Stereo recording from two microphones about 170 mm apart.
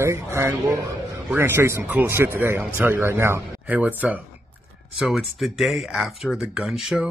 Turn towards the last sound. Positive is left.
turn(degrees=-5)  # may be behind; listen again after turning